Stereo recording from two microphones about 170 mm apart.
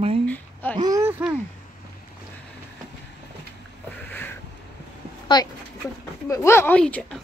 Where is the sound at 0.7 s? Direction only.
20° right (ahead or behind).